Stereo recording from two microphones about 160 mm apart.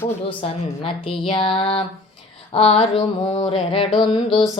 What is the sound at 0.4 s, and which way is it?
Music, 35° left (ahead or behind).